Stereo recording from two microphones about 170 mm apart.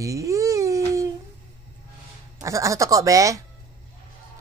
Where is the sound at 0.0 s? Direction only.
20° right (ahead or behind).